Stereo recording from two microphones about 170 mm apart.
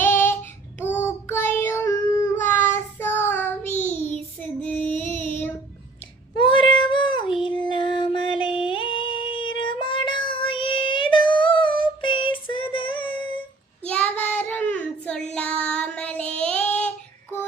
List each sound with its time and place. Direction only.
0.0 s child singing: 10° left (ahead or behind)
6.4 s child singing: 30° left (ahead or behind)
7.4 s music: 30° left (ahead or behind)
13.8 s child singing: 10° left (ahead or behind)